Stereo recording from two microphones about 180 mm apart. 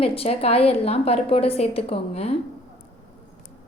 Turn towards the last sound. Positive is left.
turn(degrees=35)  # may be behind; listen again after turning